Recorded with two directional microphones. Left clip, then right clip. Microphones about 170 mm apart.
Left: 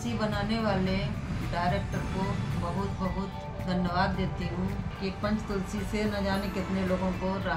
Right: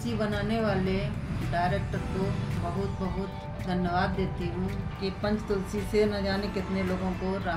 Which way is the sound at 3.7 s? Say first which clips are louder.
Right 1 dB; 20° left (ahead or behind).